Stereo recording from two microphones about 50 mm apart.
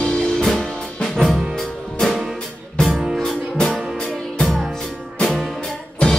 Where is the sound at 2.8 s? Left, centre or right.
Centre.